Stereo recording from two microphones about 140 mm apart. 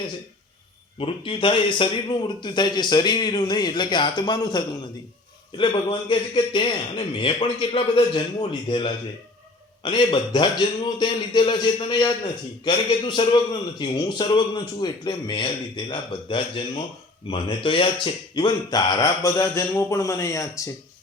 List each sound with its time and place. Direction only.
0.9 s a man's voice: 40° left (ahead or behind); by 20.7 s 20° left (ahead or behind)